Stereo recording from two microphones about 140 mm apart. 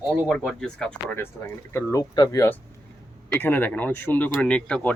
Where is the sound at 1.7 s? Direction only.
25° left (ahead or behind).